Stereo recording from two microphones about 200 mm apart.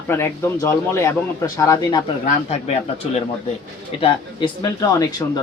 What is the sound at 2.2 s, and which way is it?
Speech, 30° left (ahead or behind).